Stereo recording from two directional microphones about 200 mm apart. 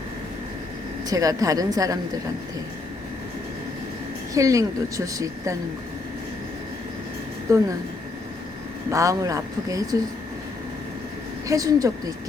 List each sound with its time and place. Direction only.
1.1 s speech: 15° right (ahead or behind)
4.4 s speech: 15° right (ahead or behind)
7.5 s speech: 15° right (ahead or behind)
8.9 s speech: 15° right (ahead or behind)
11.4 s speech: 15° right (ahead or behind)